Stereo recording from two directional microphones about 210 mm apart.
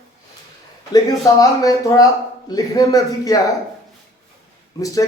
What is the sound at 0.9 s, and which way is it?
A man's voice, 15° left (ahead or behind).